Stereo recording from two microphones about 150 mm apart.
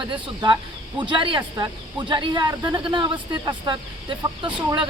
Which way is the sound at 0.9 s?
30° right (ahead or behind).